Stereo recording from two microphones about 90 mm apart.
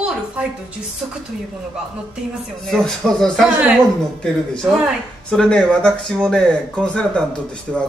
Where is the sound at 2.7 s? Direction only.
5° left (ahead or behind).